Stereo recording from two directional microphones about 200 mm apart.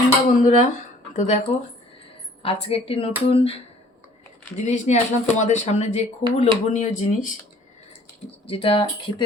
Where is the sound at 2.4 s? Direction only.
30° left (ahead or behind).